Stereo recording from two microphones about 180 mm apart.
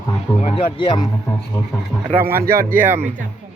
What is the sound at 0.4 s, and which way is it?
Speech, 30° left (ahead or behind).